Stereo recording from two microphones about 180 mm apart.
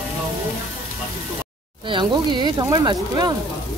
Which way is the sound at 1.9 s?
25° right (ahead or behind).